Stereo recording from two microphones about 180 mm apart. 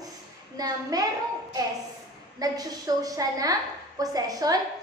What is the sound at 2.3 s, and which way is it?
A woman's voice, 20° right (ahead or behind).